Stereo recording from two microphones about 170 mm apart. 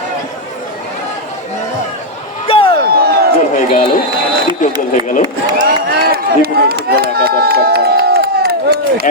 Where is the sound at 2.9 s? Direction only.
65° right (ahead or behind).